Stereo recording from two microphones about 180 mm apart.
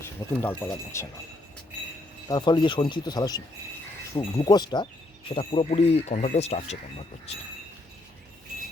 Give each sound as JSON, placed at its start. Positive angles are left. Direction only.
{"t": 0.0, "sound": "speech", "side_deg": 15}
{"t": 2.2, "sound": "speech", "side_deg": 25}